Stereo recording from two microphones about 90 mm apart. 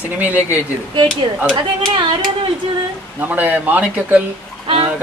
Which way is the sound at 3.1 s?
20° right (ahead or behind).